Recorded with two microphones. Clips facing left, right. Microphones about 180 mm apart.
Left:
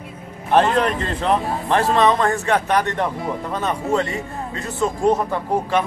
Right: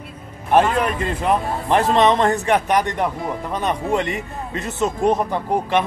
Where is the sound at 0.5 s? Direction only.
10° right (ahead or behind).